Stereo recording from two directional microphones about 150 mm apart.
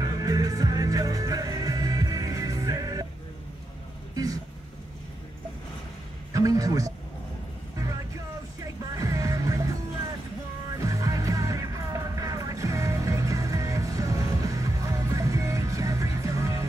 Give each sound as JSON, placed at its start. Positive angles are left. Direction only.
{"t": 0.0, "sound": "music", "side_deg": -25}
{"t": 4.1, "sound": "a sound", "side_deg": -25}
{"t": 6.3, "sound": "music", "side_deg": -25}
{"t": 8.9, "sound": "music", "side_deg": -20}
{"t": 10.8, "sound": "music", "side_deg": -20}